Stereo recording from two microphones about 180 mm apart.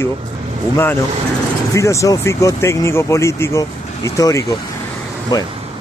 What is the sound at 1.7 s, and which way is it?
Speech, 15° left (ahead or behind).